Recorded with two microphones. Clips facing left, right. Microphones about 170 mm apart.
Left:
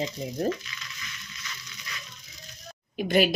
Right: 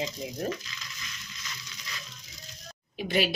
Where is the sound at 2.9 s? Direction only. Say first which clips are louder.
Left 5 dB; 50° left (ahead or behind).